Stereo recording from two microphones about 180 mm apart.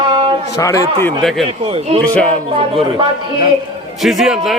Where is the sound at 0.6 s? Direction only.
20° left (ahead or behind).